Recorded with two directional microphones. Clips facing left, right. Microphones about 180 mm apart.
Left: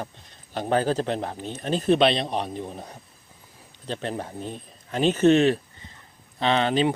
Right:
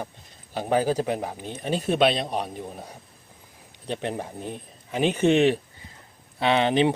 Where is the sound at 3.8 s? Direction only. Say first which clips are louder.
Right 1 dB; 15° right (ahead or behind).